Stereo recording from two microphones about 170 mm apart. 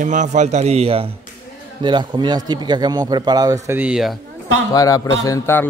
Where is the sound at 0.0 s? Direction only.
45° right (ahead or behind); by 3.5 s 25° right (ahead or behind).